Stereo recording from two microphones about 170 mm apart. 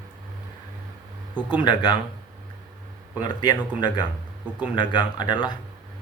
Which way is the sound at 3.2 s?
25° left (ahead or behind).